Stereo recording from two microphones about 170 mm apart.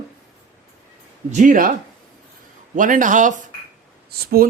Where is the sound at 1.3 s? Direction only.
50° right (ahead or behind).